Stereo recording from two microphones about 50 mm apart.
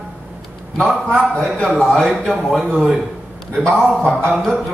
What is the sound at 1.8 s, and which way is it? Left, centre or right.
Speech, centre.